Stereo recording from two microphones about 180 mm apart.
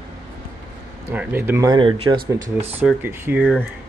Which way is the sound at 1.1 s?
10° right (ahead or behind).